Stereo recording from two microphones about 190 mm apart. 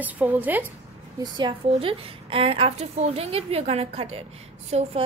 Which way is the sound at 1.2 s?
25° right (ahead or behind).